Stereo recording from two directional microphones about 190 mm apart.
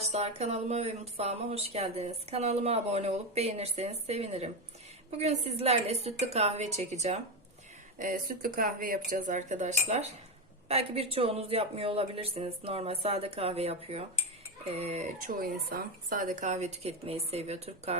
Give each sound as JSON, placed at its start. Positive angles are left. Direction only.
{"t": 0.0, "sound": "speech", "side_deg": -35}